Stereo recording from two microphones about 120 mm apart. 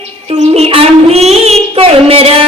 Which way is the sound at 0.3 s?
60° right (ahead or behind).